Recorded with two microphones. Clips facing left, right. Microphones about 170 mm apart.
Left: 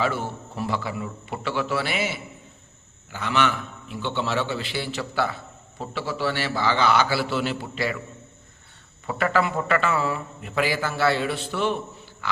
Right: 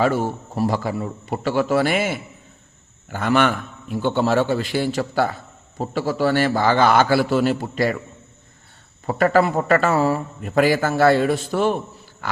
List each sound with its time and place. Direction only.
0.0 s a man's voice: 40° right (ahead or behind)
9.0 s a man's voice: 40° right (ahead or behind)